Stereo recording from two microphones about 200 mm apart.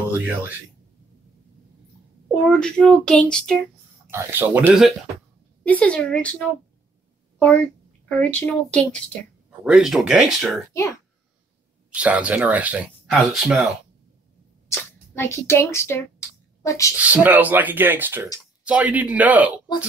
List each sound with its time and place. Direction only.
0.2 s speech: 10° right (ahead or behind)
2.4 s speech: 5° left (ahead or behind)
4.1 s speech: 10° right (ahead or behind)
5.6 s a child's voice: 5° left (ahead or behind)
11.9 s speech: 5° right (ahead or behind)
14.7 s a woman's voice: 15° left (ahead or behind)
16.9 s speech: 10° right (ahead or behind)